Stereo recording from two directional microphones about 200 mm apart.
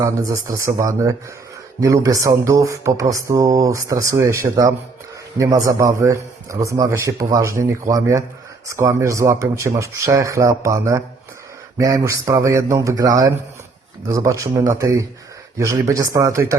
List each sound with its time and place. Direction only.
0.0 s speech: 15° right (ahead or behind)